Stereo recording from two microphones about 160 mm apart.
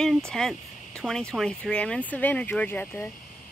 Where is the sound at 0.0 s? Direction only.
5° left (ahead or behind).